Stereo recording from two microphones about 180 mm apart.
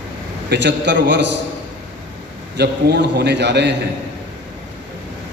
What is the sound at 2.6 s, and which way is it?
A man's voice, 70° right (ahead or behind).